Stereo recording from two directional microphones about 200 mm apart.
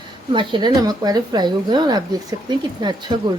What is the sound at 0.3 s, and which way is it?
A woman's voice, 20° right (ahead or behind).